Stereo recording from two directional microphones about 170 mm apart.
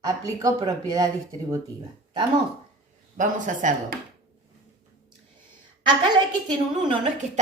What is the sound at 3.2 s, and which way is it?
Speech, 50° right (ahead or behind).